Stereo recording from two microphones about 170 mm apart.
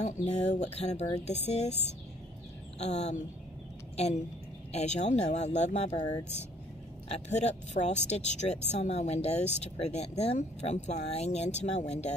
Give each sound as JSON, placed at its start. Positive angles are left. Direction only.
{"t": 0.0, "sound": "speech", "side_deg": 40}
{"t": 2.8, "sound": "speech", "side_deg": 40}
{"t": 7.1, "sound": "speech", "side_deg": 40}